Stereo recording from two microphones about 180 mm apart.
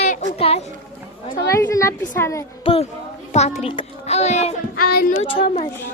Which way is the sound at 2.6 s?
30° left (ahead or behind).